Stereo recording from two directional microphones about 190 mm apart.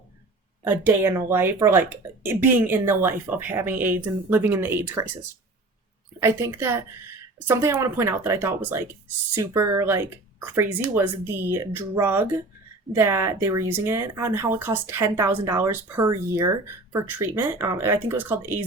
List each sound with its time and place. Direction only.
0.6 s speech: 10° right (ahead or behind)
6.1 s speech: 15° right (ahead or behind)